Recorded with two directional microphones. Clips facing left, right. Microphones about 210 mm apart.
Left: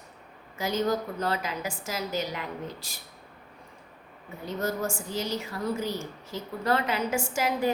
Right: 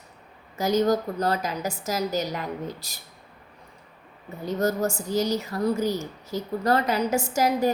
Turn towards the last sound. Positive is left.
turn(degrees=-40)  # may be behind; listen again after turning